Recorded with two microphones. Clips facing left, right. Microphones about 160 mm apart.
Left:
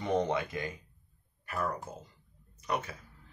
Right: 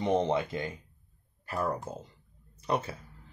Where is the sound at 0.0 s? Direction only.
20° right (ahead or behind).